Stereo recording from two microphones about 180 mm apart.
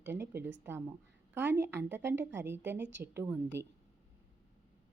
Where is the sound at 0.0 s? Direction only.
10° right (ahead or behind).